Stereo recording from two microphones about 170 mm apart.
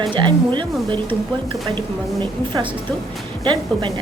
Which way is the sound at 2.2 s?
25° right (ahead or behind).